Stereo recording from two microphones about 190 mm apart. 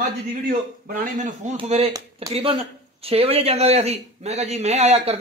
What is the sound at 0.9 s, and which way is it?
A man's voice, 45° right (ahead or behind).